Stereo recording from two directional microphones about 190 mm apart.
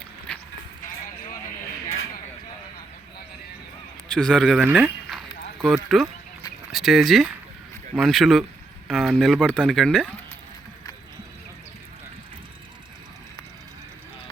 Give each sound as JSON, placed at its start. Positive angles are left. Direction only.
{"t": 4.1, "sound": "speech", "side_deg": 5}